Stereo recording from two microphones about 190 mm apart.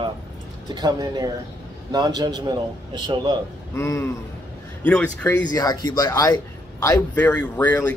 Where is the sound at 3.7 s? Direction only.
15° left (ahead or behind).